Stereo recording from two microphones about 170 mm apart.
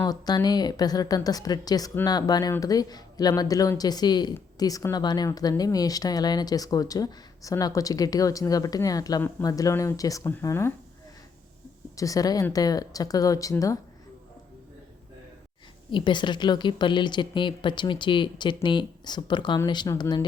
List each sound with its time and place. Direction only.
0.0 s speech: 25° left (ahead or behind)
11.9 s speech: 20° left (ahead or behind)
15.9 s speech: 30° left (ahead or behind)